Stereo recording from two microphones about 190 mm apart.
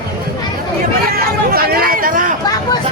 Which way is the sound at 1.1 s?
50° right (ahead or behind).